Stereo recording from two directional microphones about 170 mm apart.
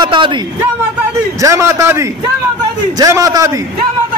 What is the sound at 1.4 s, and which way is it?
A man's voice, 20° right (ahead or behind).